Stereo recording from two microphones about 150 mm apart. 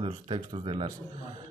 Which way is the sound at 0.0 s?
35° right (ahead or behind).